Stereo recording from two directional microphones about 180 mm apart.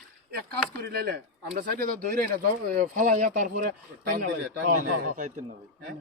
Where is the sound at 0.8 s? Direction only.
60° right (ahead or behind).